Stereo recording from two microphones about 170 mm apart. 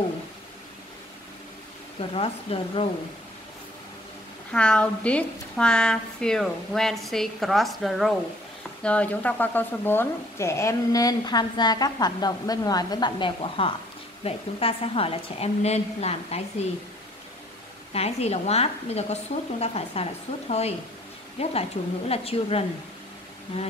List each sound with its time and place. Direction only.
2.0 s a woman's voice: 35° left (ahead or behind)
4.5 s a woman's voice: 5° left (ahead or behind); by 16.3 s 40° left (ahead or behind)
17.9 s a woman's voice: 40° left (ahead or behind)